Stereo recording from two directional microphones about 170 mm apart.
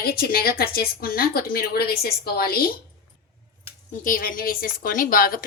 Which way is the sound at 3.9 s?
55° left (ahead or behind).